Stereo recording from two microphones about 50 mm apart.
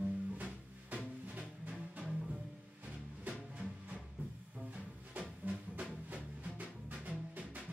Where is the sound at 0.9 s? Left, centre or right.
Right.